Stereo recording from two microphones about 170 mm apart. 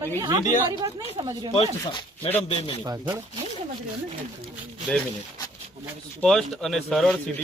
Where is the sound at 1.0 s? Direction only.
35° right (ahead or behind).